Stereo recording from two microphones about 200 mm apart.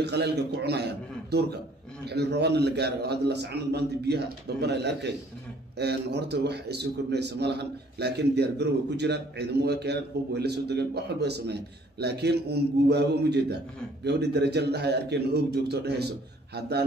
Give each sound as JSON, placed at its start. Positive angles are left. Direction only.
{"t": 0.0, "sound": "a man's voice", "side_deg": -55}